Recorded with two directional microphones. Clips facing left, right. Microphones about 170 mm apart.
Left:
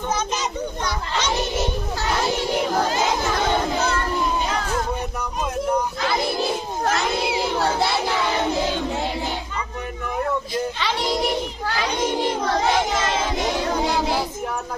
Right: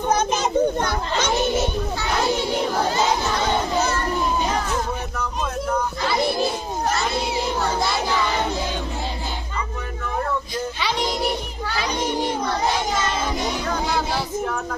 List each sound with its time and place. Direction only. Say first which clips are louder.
0.1 s a child's voice: right 6 dB; 55° right (ahead or behind)
12.5 s child singing: left 2 dB; 90° left